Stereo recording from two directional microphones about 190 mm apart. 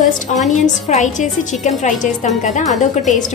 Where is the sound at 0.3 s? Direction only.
40° left (ahead or behind).